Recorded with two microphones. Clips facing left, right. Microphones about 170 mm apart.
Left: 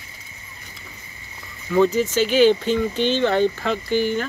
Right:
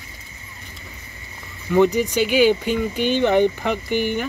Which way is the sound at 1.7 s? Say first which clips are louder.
Right 1 dB; 15° right (ahead or behind).